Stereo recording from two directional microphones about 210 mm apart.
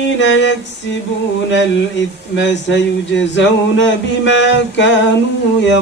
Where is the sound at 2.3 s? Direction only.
60° left (ahead or behind).